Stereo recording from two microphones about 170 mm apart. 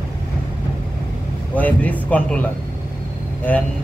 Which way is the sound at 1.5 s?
10° left (ahead or behind).